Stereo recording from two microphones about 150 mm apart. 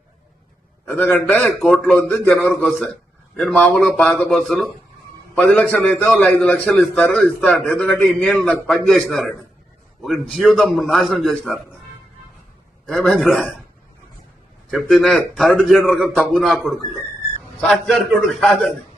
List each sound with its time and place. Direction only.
0.9 s a man's voice: 10° left (ahead or behind)
12.8 s a man's voice: centre (ahead or behind)
14.7 s a man's voice: centre (ahead or behind)